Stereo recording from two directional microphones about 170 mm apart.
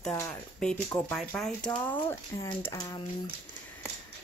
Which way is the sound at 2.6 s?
20° left (ahead or behind).